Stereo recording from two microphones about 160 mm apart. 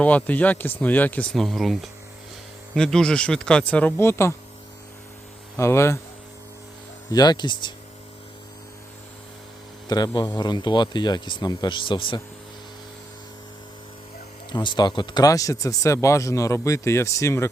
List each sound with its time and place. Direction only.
0.0 s speech: 10° left (ahead or behind)
5.5 s speech: 15° left (ahead or behind)
7.1 s speech: 25° left (ahead or behind)
10.2 s speech: 25° left (ahead or behind)
14.5 s speech: 30° left (ahead or behind)